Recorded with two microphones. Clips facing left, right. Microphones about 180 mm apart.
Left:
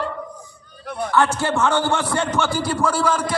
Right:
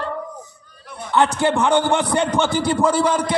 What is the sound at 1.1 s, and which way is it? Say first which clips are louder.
A man's voice: right 2 dB; 20° right (ahead or behind).